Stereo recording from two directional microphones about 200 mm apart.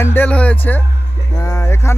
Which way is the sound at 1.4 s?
15° left (ahead or behind).